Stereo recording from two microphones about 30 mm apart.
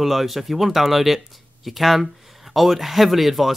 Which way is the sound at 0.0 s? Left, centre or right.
Centre.